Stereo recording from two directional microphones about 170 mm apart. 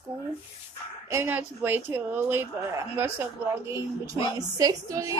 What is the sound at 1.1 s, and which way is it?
A woman's voice, 10° right (ahead or behind).